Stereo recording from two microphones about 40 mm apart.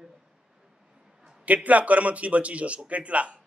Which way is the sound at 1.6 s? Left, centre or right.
Right.